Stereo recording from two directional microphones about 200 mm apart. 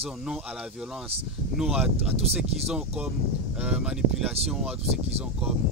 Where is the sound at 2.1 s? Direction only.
30° right (ahead or behind).